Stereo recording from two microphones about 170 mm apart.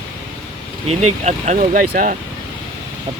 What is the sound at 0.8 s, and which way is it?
Speech, 40° right (ahead or behind).